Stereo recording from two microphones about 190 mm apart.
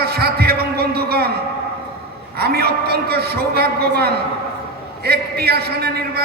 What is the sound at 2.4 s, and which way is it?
A man's voice, 55° right (ahead or behind).